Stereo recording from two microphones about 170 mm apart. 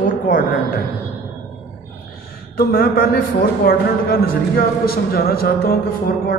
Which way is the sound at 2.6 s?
60° left (ahead or behind).